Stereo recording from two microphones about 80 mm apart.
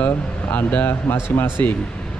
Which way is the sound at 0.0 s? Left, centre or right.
Centre.